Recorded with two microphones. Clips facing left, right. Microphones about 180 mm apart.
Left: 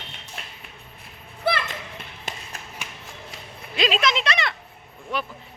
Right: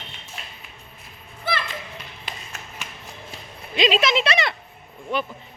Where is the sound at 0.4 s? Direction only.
60° left (ahead or behind).